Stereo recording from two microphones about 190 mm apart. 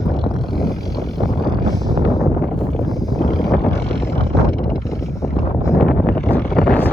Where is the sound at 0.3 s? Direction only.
Centre (ahead or behind).